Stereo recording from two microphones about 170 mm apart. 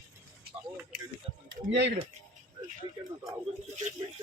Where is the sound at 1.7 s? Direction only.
90° right.